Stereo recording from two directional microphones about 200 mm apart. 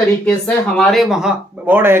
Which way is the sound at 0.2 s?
5° left (ahead or behind).